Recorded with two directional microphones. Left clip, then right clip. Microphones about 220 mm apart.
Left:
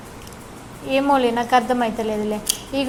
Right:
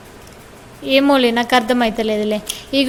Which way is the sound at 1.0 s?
50° right (ahead or behind).